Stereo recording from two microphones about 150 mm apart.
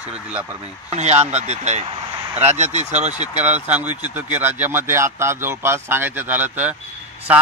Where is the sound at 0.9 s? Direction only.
50° right (ahead or behind).